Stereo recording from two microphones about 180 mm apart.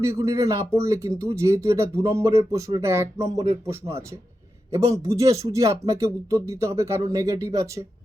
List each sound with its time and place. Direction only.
0.0 s speech: 15° right (ahead or behind)
3.2 s speech: 35° right (ahead or behind)
3.7 s speech: 15° right (ahead or behind)